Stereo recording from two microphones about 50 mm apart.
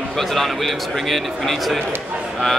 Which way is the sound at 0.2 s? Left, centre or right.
Centre.